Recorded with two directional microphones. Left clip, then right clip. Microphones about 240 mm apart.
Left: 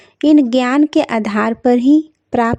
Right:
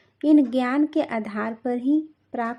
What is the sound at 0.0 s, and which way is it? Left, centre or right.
A woman's voice, left.